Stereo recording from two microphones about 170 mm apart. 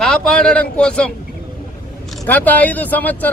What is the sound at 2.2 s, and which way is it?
Speech, 10° left (ahead or behind).